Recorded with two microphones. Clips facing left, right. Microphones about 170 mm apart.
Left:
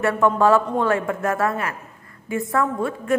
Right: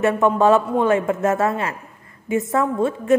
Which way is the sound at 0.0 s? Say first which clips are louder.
Right 2 dB; 20° right (ahead or behind).